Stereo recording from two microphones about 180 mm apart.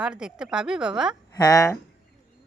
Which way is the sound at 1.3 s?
20° left (ahead or behind).